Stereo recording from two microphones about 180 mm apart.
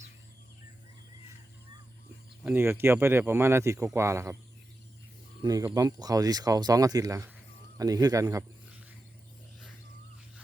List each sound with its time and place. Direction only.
2.4 s speech: 10° right (ahead or behind)
5.4 s speech: 20° right (ahead or behind)